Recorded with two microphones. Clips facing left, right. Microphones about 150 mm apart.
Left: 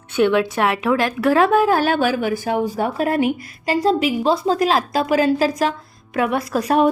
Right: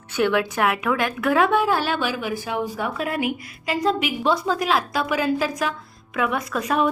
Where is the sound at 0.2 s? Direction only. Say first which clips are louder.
Left 4 dB; 25° left (ahead or behind).